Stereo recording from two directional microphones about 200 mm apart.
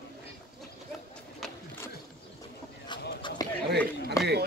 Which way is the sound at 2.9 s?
25° left (ahead or behind).